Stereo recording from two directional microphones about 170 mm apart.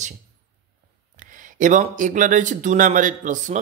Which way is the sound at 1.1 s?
50° right (ahead or behind).